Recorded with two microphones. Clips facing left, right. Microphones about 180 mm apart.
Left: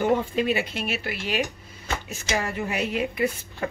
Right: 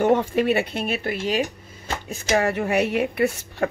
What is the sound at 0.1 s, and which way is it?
A woman's voice, 70° right (ahead or behind).